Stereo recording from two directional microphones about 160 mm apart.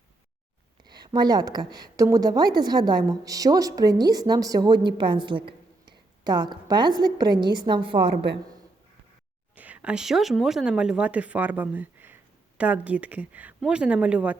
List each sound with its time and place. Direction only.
0.9 s a woman's voice: 25° right (ahead or behind)
9.6 s speech: 10° right (ahead or behind)